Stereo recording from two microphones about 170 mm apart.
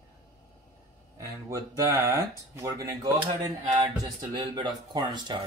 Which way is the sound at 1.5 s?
20° right (ahead or behind).